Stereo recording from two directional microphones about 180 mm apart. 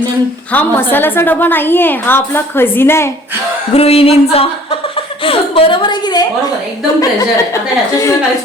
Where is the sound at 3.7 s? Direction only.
35° left (ahead or behind).